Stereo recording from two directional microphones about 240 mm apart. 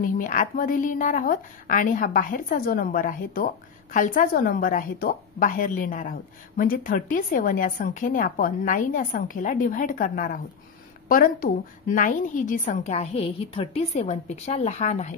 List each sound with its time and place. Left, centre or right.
0.0 s a woman's voice: left